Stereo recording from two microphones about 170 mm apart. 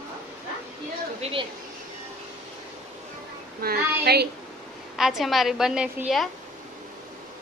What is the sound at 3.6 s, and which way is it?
Child singing, 65° right (ahead or behind).